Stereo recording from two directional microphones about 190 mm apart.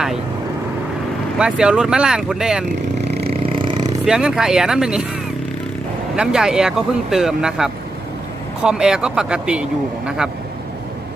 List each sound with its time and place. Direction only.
1.4 s speech: 5° right (ahead or behind)
3.1 s vehicle: 60° right (ahead or behind)
3.4 s a sound: 25° right (ahead or behind)
4.0 s speech: 5° right (ahead or behind)
6.1 s speech: 5° right (ahead or behind)